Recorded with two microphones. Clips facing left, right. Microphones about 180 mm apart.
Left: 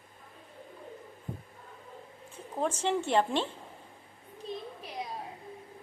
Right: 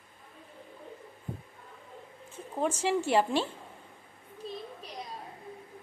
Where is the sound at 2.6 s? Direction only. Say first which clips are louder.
Right 1 dB; 10° right (ahead or behind).